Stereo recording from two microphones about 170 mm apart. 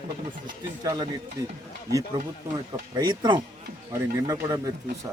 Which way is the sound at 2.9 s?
25° right (ahead or behind).